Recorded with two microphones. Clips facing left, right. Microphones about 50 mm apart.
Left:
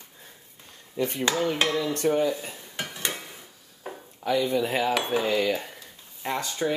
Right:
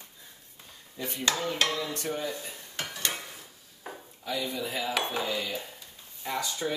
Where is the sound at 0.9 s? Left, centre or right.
Left.